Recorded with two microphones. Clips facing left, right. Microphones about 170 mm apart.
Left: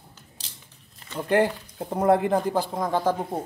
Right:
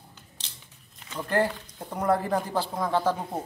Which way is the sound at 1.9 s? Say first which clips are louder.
Left 5 dB; 30° left (ahead or behind).